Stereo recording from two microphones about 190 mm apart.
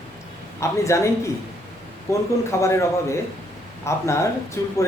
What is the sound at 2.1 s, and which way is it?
Speech, 15° left (ahead or behind).